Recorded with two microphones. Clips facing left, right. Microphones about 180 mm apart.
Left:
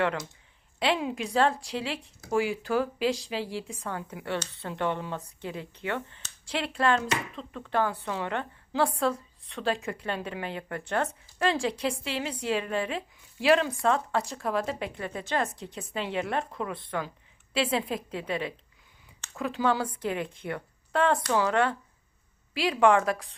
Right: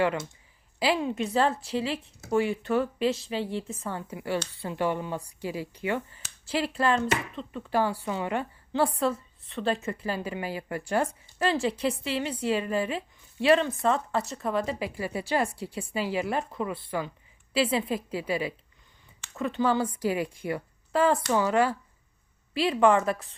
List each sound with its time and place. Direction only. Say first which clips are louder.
0.8 s a woman's voice: right 1 dB; centre (ahead or behind)